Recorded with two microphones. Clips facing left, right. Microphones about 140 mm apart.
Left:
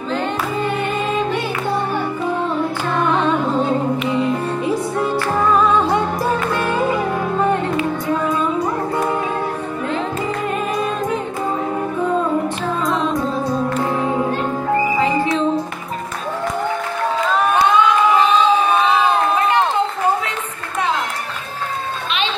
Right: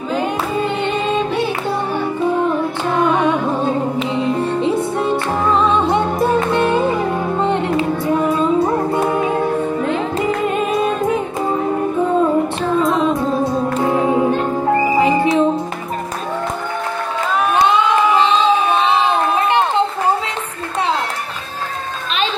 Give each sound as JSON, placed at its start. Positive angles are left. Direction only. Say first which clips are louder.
{"t": 3.0, "sound": "music", "louder": "right 2 dB", "side_deg": -15}
{"t": 4.0, "sound": "music", "louder": "right 1 dB", "side_deg": -25}
{"t": 10.7, "sound": "music", "louder": "right 4 dB", "side_deg": 0}
{"t": 12.8, "sound": "music", "louder": "even", "side_deg": 0}
{"t": 15.0, "sound": "music", "louder": "right 4 dB", "side_deg": -25}